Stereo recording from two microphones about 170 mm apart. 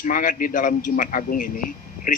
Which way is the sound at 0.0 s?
55° left (ahead or behind).